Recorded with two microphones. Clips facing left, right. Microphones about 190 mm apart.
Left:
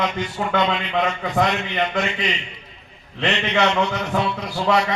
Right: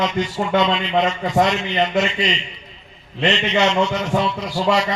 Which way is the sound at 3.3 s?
60° left (ahead or behind).